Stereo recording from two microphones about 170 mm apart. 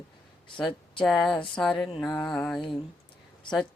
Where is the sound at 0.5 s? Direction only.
30° left (ahead or behind).